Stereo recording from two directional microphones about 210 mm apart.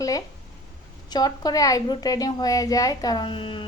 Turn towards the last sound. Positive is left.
turn(degrees=25)  # may be behind; listen again after turning